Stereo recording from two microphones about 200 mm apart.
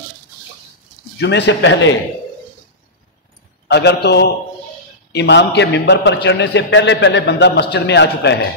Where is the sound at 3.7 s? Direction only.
55° left (ahead or behind).